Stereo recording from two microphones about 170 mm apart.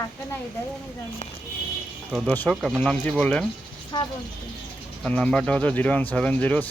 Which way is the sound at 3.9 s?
25° left (ahead or behind).